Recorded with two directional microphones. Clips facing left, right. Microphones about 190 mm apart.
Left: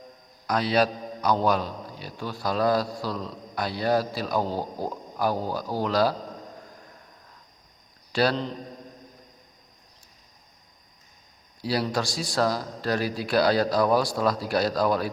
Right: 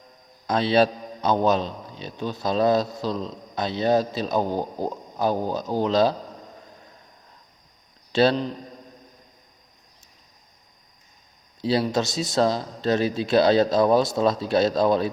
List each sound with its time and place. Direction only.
0.4 s a man's voice: 25° right (ahead or behind)
8.1 s a man's voice: 25° right (ahead or behind)
11.6 s a man's voice: 25° right (ahead or behind)